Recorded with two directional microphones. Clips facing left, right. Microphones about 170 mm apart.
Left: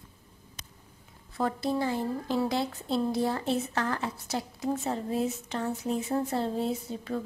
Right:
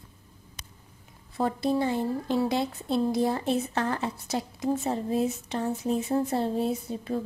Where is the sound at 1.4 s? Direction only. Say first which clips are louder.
Right 3 dB; 25° right (ahead or behind).